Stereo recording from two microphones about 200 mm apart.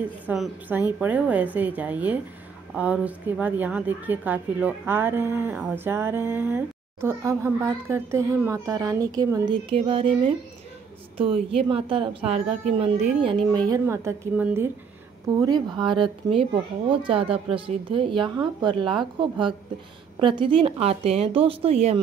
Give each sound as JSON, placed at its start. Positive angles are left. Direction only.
{"t": 0.3, "sound": "a woman's voice", "side_deg": -10}
{"t": 13.7, "sound": "a woman's voice", "side_deg": -15}
{"t": 15.3, "sound": "speech", "side_deg": -20}